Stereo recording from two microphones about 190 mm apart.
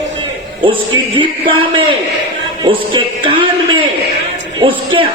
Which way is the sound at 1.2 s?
25° right (ahead or behind).